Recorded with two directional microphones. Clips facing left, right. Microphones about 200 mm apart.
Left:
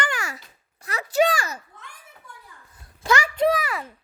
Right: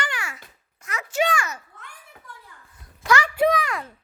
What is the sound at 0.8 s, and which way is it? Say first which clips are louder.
Speech: left 4 dB; 35° left (ahead or behind).